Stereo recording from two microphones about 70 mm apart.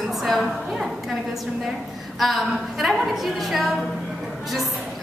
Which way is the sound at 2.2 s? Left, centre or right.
Centre.